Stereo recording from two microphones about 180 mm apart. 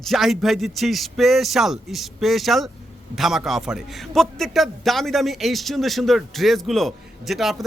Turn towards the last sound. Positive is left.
turn(degrees=0)  # may be behind; listen again after turning